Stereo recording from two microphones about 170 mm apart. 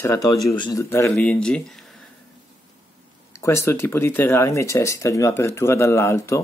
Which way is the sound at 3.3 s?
15° left (ahead or behind).